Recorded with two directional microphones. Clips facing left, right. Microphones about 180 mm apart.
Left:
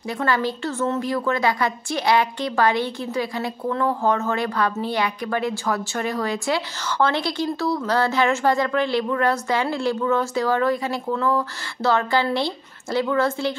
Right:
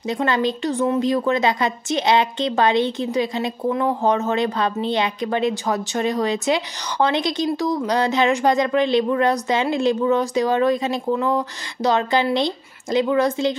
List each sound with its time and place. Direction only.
0.1 s a woman's voice: 20° right (ahead or behind)